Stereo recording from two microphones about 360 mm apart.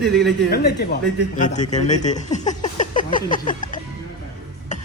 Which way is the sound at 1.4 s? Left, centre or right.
Centre.